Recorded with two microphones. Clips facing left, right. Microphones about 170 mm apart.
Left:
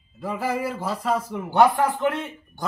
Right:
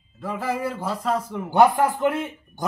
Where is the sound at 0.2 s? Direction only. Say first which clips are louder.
Even; 10° left (ahead or behind).